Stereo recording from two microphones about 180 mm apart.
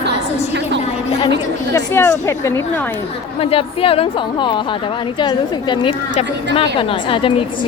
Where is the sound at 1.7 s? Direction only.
15° left (ahead or behind).